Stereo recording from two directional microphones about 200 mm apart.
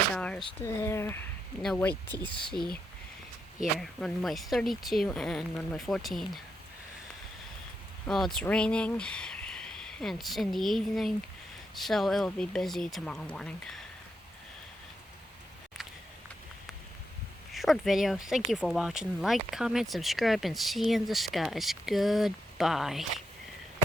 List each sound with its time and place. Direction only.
0.1 s speech: 5° left (ahead or behind)
3.6 s speech: centre (ahead or behind)
8.0 s speech: centre (ahead or behind)
17.5 s speech: centre (ahead or behind)